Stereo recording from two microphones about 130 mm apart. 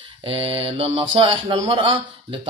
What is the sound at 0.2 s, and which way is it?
Speech, 45° right (ahead or behind).